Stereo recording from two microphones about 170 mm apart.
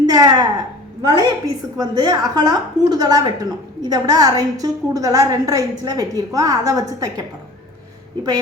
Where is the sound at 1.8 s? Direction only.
25° right (ahead or behind).